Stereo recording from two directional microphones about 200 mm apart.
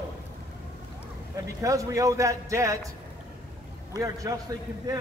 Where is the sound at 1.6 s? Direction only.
15° right (ahead or behind).